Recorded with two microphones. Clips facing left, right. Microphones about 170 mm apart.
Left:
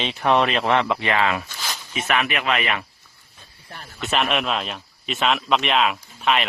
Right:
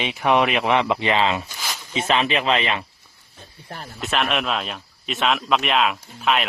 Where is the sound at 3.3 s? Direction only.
45° right (ahead or behind).